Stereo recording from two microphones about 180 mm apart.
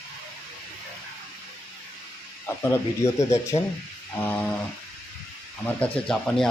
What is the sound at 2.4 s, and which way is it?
Speech, 15° left (ahead or behind).